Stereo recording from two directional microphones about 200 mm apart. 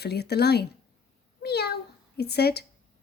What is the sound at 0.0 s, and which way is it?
Speech, 55° left (ahead or behind).